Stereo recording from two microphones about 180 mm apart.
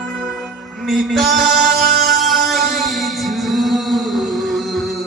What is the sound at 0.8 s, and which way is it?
Music, centre (ahead or behind).